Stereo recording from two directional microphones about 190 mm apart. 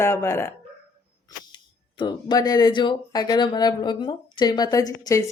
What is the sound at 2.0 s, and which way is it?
Speech, 25° left (ahead or behind).